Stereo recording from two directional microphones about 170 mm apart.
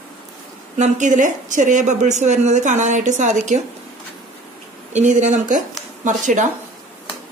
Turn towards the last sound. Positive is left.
turn(degrees=-45)  # may be behind; listen again after turning